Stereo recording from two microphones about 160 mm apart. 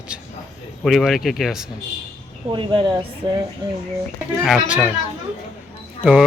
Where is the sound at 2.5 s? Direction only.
30° right (ahead or behind).